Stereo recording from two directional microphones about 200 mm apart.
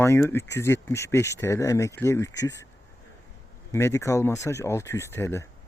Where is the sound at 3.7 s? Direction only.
15° left (ahead or behind).